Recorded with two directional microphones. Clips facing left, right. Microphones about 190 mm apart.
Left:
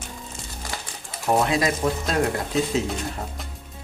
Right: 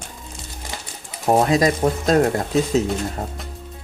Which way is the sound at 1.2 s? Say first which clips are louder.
Right 5 dB; 40° right (ahead or behind).